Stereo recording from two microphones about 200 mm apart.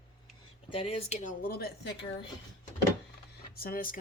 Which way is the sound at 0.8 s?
30° left (ahead or behind).